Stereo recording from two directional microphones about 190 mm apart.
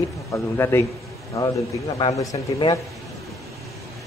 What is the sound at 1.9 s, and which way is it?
Speech, 20° left (ahead or behind).